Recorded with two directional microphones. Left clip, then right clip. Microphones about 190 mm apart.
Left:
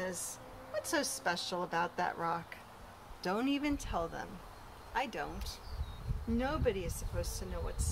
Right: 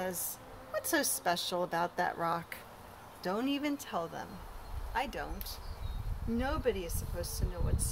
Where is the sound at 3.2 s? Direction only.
5° left (ahead or behind).